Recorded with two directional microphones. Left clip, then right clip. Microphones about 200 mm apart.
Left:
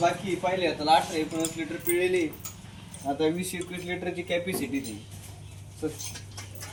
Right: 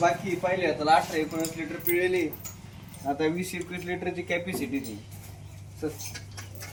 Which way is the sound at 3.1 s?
Centre (ahead or behind).